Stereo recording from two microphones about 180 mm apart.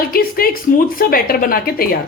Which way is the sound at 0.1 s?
55° left (ahead or behind).